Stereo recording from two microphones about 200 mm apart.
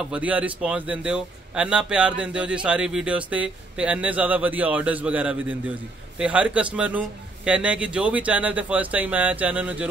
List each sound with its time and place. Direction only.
0.0 s a man's voice: 5° right (ahead or behind)